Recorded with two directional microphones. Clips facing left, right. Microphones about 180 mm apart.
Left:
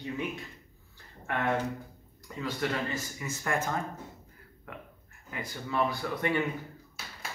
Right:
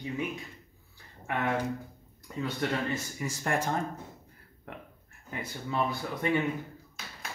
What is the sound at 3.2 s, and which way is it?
Speech, 35° right (ahead or behind).